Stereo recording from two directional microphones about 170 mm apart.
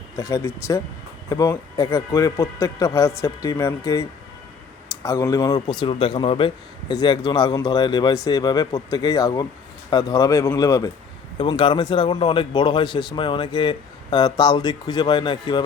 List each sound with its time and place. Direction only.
0.2 s speech: 20° left (ahead or behind)
5.0 s speech: 20° left (ahead or behind)